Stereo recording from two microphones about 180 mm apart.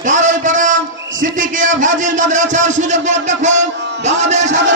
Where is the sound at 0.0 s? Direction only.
45° right (ahead or behind).